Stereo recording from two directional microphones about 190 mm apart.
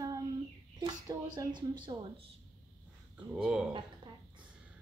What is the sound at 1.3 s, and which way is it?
Child singing, 25° right (ahead or behind).